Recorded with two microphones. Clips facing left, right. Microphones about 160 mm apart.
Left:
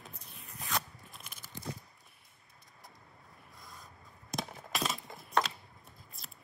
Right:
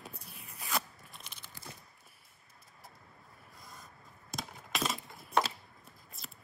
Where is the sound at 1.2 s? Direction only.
50° left (ahead or behind).